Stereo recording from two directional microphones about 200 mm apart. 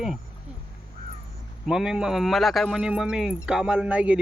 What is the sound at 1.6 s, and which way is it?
Speech, 5° right (ahead or behind).